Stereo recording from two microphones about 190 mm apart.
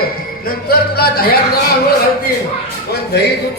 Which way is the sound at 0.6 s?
55° left (ahead or behind).